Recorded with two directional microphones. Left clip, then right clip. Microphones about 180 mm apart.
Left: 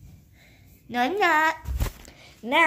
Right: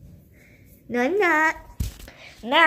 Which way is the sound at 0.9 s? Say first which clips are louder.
Right 1 dB; 10° left (ahead or behind).